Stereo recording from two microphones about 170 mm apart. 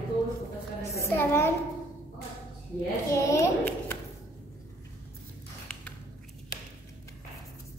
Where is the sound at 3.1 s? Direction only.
20° left (ahead or behind).